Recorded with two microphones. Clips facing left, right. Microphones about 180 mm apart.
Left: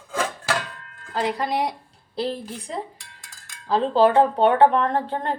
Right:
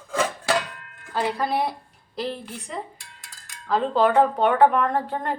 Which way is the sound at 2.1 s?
30° left (ahead or behind).